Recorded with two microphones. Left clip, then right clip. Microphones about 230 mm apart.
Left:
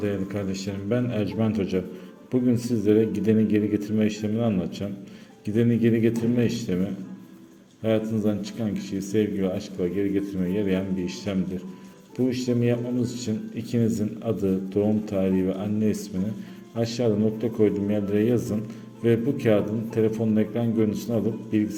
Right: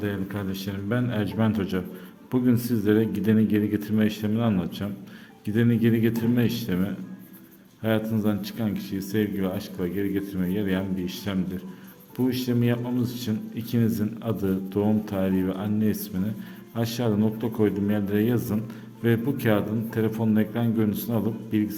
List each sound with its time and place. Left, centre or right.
0.0 s speech: centre